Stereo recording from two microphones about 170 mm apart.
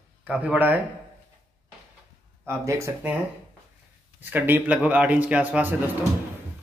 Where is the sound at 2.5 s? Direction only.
15° right (ahead or behind).